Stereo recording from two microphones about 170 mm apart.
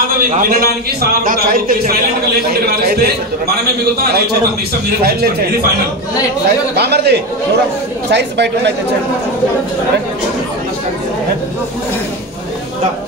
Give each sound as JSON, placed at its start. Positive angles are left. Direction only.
{"t": 0.2, "sound": "a man's voice", "side_deg": -55}
{"t": 5.0, "sound": "a man's voice", "side_deg": -65}
{"t": 6.7, "sound": "a man's voice", "side_deg": -75}
{"t": 8.1, "sound": "speech", "side_deg": -90}